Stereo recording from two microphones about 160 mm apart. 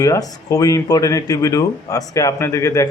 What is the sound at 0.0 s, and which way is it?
Speech, 20° left (ahead or behind).